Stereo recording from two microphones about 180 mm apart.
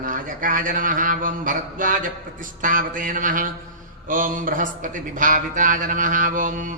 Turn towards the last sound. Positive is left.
turn(degrees=-45)  # may be behind; listen again after turning